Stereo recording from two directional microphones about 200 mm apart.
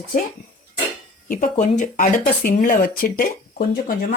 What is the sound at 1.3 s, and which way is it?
Speech, 40° left (ahead or behind).